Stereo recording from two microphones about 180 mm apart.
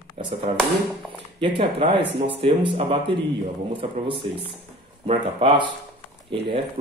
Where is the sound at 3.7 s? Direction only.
30° right (ahead or behind).